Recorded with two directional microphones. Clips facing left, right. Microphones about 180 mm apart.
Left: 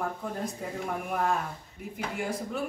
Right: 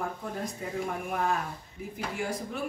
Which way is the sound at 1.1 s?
Centre (ahead or behind).